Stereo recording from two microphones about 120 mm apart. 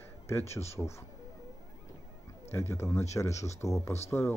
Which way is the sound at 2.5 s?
20° left (ahead or behind).